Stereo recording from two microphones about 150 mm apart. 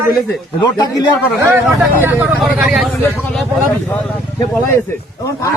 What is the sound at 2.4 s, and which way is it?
Speech, centre (ahead or behind).